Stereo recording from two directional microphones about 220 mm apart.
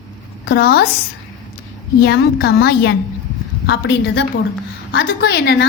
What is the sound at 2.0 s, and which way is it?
A woman's voice, 45° left (ahead or behind).